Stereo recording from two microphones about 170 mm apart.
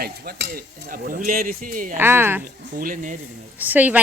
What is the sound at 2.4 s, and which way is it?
Speech, 55° right (ahead or behind).